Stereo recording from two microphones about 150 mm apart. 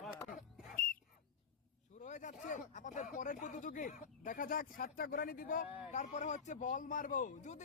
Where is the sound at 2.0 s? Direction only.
55° left (ahead or behind).